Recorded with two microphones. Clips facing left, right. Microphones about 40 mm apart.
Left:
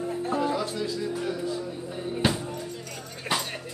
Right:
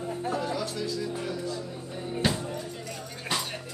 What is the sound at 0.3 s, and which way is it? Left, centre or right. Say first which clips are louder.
Music: left 4 dB; left.